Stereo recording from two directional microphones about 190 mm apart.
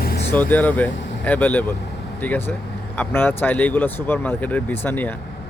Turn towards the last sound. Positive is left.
turn(degrees=10)  # may be behind; listen again after turning